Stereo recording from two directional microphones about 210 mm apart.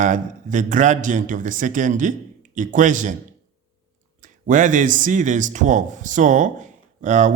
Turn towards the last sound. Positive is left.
turn(degrees=-35)  # may be behind; listen again after turning